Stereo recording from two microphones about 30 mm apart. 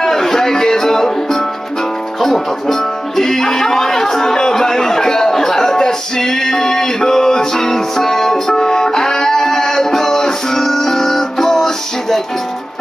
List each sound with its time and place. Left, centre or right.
0.0 s music: centre